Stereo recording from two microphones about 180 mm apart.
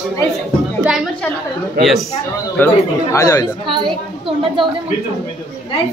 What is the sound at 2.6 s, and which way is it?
Speech, 10° left (ahead or behind).